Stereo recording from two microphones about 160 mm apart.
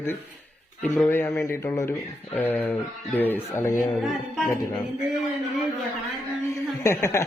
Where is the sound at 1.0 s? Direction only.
15° left (ahead or behind).